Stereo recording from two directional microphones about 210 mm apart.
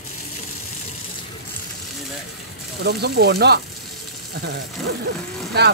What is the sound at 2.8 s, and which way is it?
Speech, 50° right (ahead or behind).